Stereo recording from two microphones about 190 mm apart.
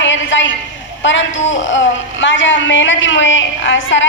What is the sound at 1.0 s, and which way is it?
A man's voice, 75° left (ahead or behind).